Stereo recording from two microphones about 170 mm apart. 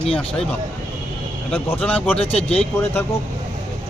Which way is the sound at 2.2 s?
35° left (ahead or behind).